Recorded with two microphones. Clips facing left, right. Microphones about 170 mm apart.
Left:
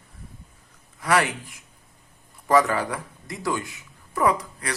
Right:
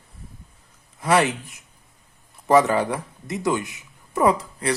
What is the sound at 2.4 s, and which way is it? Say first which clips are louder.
A man's voice: right 3 dB; 25° right (ahead or behind).